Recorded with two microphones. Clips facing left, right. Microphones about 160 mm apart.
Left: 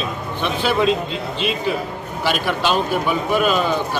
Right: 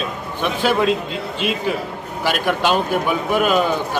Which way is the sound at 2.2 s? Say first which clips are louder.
Right 1 dB; 10° right (ahead or behind).